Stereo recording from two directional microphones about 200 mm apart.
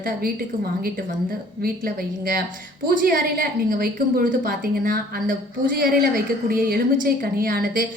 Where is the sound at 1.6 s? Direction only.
45° right (ahead or behind).